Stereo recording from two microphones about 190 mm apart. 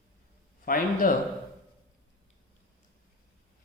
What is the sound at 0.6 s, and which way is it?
Speech, 45° left (ahead or behind).